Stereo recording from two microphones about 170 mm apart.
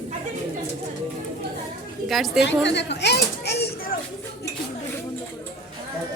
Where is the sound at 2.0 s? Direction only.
Centre (ahead or behind).